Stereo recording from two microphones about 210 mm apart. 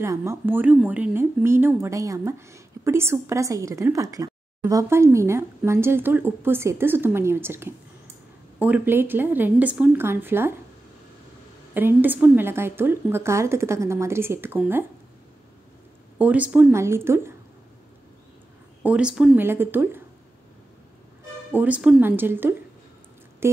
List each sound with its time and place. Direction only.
0.0 s speech: 15° right (ahead or behind)
11.7 s speech: 10° right (ahead or behind)
16.2 s speech: 5° right (ahead or behind)
18.9 s speech: 5° right (ahead or behind)
21.5 s speech: 5° right (ahead or behind)